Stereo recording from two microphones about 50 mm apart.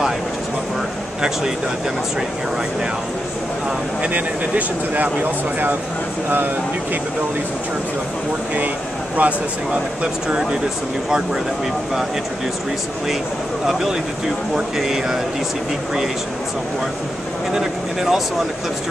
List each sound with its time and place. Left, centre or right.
4.0 s speech: right
9.1 s speech: right
13.7 s speech: centre
17.5 s speech: centre